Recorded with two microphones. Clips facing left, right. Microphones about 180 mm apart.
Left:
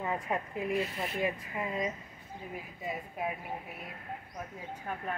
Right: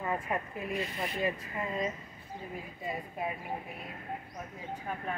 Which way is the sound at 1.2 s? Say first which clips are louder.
Even; 15° left (ahead or behind).